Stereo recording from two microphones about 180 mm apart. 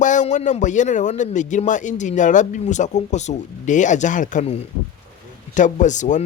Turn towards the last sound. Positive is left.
turn(degrees=45)  # may be behind; listen again after turning